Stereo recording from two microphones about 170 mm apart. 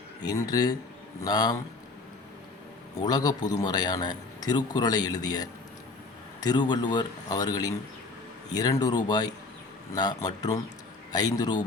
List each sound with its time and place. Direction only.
0.2 s a man's voice: 20° left (ahead or behind)
3.0 s a man's voice: 25° left (ahead or behind)